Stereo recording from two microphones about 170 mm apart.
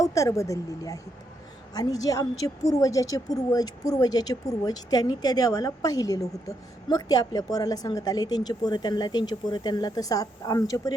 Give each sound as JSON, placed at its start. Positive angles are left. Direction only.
{"t": 0.0, "sound": "speech", "side_deg": 20}